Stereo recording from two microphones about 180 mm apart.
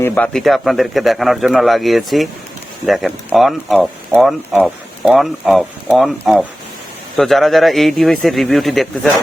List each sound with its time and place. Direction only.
0.0 s speech: 15° left (ahead or behind)
0.3 s speech: centre (ahead or behind)